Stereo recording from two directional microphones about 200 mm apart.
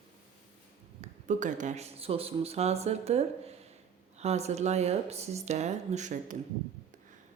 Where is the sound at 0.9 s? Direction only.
40° right (ahead or behind).